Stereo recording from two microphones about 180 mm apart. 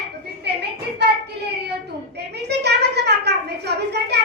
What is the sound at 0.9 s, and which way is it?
Child singing, 70° right (ahead or behind).